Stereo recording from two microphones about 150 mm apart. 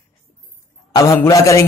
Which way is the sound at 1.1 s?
20° left (ahead or behind).